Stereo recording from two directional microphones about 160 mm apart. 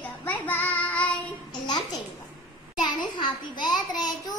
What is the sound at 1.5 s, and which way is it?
Babbling, 25° left (ahead or behind).